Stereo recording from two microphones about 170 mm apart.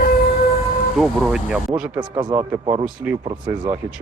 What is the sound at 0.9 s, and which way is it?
Speech, centre (ahead or behind).